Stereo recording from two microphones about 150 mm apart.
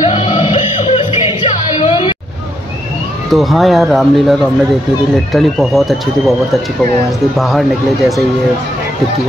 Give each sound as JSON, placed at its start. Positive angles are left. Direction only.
{"t": 0.0, "sound": "music", "side_deg": 50}
{"t": 0.3, "sound": "music", "side_deg": 30}
{"t": 0.6, "sound": "music", "side_deg": 50}
{"t": 1.8, "sound": "hubbub", "side_deg": 35}
{"t": 3.3, "sound": "speech", "side_deg": 0}